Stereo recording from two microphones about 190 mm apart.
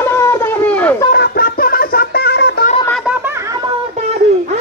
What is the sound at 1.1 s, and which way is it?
Music, 50° left (ahead or behind).